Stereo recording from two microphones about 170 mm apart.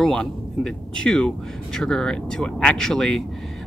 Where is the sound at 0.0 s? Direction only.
5° left (ahead or behind).